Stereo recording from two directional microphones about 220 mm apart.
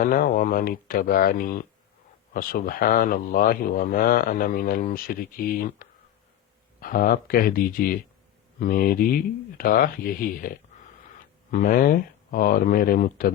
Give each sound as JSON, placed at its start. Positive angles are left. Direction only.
{"t": 0.0, "sound": "speech", "side_deg": 40}